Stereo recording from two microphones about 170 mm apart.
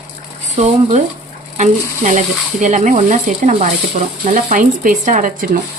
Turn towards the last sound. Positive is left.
turn(degrees=-50)  # may be behind; listen again after turning